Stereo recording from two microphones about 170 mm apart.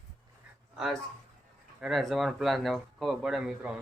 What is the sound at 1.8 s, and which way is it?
Speech, centre (ahead or behind).